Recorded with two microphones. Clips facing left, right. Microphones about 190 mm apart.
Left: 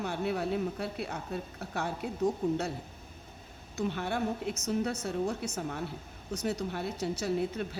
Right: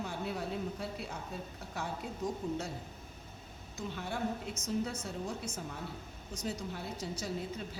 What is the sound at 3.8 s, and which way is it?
A woman's voice, 65° left (ahead or behind).